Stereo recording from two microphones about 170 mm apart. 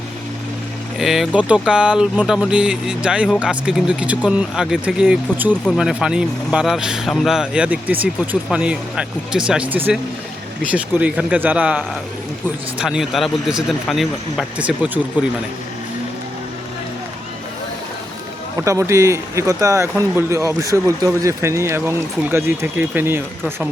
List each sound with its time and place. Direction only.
0.9 s speech: centre (ahead or behind)
18.5 s speech: 15° right (ahead or behind)